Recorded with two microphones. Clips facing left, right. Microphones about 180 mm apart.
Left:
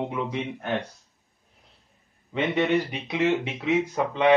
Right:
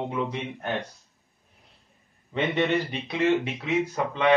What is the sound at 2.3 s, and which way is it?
Speech, 10° left (ahead or behind).